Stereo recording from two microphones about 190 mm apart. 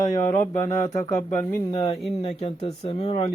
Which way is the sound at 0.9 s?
20° left (ahead or behind).